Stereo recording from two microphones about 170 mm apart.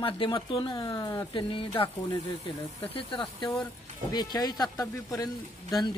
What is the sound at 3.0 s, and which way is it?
Speech, 25° left (ahead or behind).